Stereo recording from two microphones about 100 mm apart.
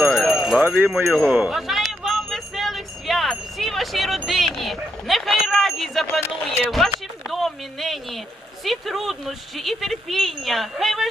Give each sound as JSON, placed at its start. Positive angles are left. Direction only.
{"t": 0.0, "sound": "jingle bell", "side_deg": 0}
{"t": 0.9, "sound": "a sound", "side_deg": 0}
{"t": 4.3, "sound": "speech", "side_deg": 0}